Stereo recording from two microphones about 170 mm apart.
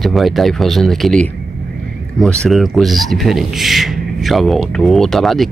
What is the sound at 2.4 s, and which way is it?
Speech, centre (ahead or behind).